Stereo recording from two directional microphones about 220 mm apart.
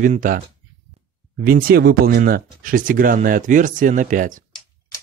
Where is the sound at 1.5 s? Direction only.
40° right (ahead or behind).